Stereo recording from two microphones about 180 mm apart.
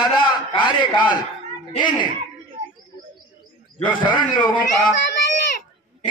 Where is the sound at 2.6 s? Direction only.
50° right (ahead or behind).